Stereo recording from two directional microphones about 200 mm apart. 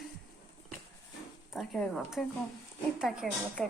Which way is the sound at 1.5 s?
Centre (ahead or behind).